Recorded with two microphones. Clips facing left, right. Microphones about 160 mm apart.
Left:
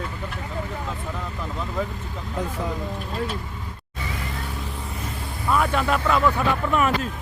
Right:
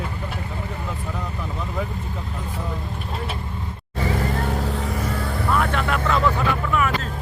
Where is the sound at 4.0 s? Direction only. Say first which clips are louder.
Right 9 dB; 60° right (ahead or behind).